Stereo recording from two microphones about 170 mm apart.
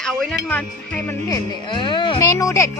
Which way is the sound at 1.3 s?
30° left (ahead or behind).